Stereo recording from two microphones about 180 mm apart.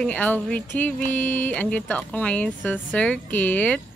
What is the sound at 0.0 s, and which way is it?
A woman's voice, 10° left (ahead or behind).